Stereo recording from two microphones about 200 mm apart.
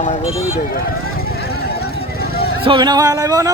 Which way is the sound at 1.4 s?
50° left (ahead or behind).